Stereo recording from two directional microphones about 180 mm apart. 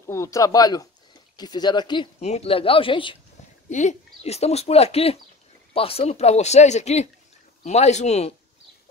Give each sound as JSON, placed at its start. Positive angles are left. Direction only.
{"t": 0.0, "sound": "speech", "side_deg": 15}
{"t": 2.1, "sound": "speech", "side_deg": 35}
{"t": 3.7, "sound": "speech", "side_deg": 40}